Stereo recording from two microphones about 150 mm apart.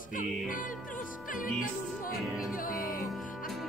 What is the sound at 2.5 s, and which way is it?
Music, 70° left (ahead or behind).